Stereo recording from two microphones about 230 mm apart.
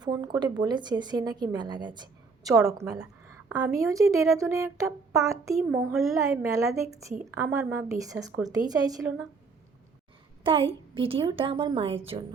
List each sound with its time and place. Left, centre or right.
0.0 s a woman's voice: centre
2.6 s a child's voice: centre
2.9 s a woman's voice: centre
5.6 s a child's voice: centre
6.1 s a woman's voice: centre
10.4 s a woman's voice: right